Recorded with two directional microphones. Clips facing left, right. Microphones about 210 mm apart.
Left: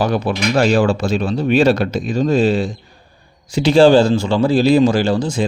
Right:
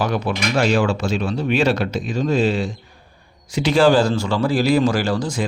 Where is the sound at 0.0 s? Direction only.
35° left (ahead or behind).